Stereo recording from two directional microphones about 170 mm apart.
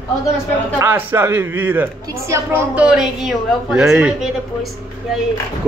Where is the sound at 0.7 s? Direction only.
15° right (ahead or behind).